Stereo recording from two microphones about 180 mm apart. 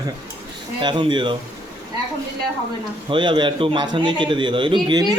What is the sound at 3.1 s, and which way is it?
A man's voice, 25° right (ahead or behind).